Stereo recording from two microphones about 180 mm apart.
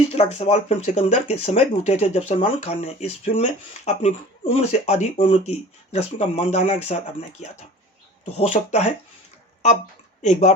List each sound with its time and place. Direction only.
0.1 s speech: 35° left (ahead or behind)
10.2 s speech: 40° left (ahead or behind)